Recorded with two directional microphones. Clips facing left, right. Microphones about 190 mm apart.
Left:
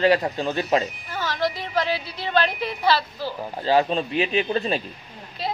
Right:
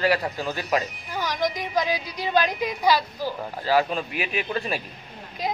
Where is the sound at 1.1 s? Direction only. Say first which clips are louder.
Even; 15° right (ahead or behind).